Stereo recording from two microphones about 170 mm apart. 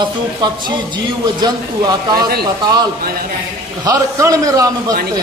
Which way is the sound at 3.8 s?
20° right (ahead or behind).